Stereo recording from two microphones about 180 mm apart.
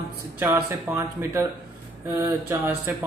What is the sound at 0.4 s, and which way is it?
Speech, 10° right (ahead or behind).